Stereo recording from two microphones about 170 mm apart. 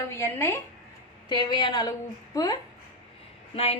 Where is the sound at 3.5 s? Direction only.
35° left (ahead or behind).